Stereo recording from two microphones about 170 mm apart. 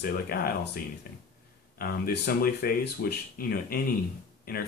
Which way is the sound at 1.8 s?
60° left (ahead or behind).